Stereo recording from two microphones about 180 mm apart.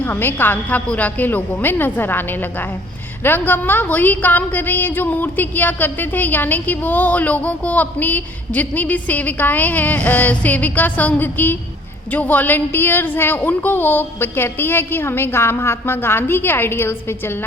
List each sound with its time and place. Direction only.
0.0 s a woman's voice: 10° left (ahead or behind)